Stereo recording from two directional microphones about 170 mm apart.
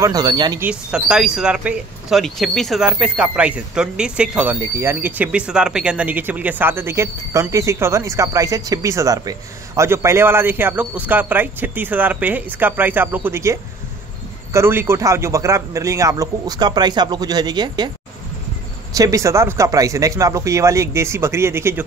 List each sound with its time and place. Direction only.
0.0 s a man's voice: 25° right (ahead or behind)
0.6 s a man's voice: 5° right (ahead or behind); by 17.9 s 25° right (ahead or behind)
18.9 s speech: 20° right (ahead or behind)